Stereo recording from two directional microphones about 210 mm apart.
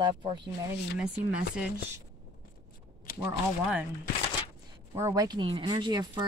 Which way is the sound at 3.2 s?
15° right (ahead or behind).